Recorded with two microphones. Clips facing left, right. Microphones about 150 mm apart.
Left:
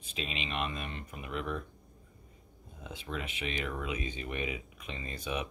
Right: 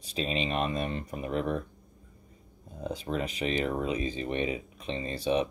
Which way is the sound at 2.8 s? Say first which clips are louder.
Right 8 dB; 40° right (ahead or behind).